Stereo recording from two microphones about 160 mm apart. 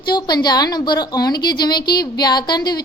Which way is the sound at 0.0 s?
25° left (ahead or behind).